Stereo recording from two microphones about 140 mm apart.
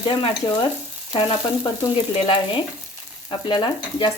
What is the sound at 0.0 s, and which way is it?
Speech, 35° left (ahead or behind).